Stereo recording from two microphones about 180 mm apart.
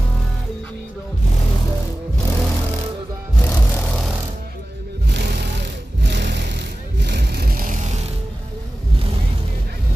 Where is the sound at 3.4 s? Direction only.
10° left (ahead or behind).